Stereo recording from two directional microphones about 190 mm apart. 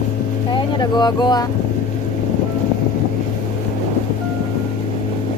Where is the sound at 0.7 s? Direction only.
20° left (ahead or behind).